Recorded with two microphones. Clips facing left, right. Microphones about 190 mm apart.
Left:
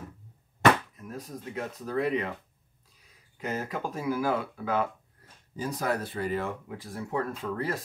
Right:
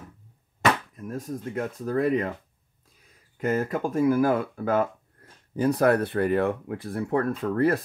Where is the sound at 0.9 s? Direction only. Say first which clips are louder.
Right 7 dB; 50° right (ahead or behind).